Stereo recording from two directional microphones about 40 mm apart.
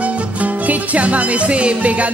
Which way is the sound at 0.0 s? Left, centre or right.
Right.